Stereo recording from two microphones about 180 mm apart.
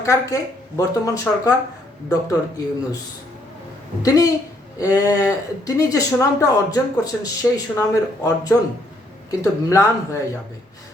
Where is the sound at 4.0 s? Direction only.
20° left (ahead or behind).